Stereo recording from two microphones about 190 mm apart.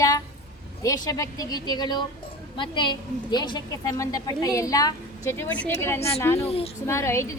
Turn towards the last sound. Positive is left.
turn(degrees=15)  # may be behind; listen again after turning